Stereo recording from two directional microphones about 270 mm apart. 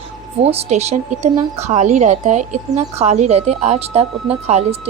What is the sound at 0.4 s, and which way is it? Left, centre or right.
Speech, right.